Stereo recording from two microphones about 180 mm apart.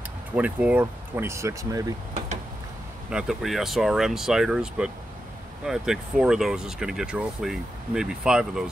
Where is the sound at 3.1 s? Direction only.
5° right (ahead or behind).